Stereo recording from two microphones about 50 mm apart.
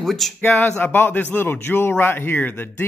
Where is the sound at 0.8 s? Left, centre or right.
Left.